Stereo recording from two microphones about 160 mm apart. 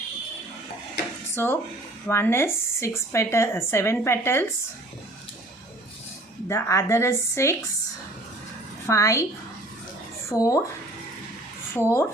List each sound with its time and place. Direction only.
1.4 s speech: 15° left (ahead or behind)
6.5 s speech: 20° left (ahead or behind)
8.9 s a woman's voice: 20° left (ahead or behind)
10.2 s a woman's voice: 20° left (ahead or behind)
11.7 s speech: 15° left (ahead or behind)